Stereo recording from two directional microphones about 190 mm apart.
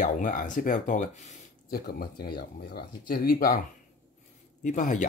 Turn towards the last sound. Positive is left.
turn(degrees=40)  # may be behind; listen again after turning